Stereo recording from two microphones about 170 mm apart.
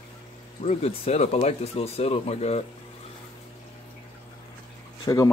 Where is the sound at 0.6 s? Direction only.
40° left (ahead or behind).